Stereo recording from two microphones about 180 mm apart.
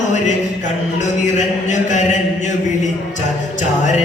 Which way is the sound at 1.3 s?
40° left (ahead or behind).